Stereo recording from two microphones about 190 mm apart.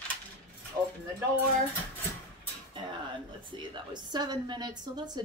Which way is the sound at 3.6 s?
25° right (ahead or behind).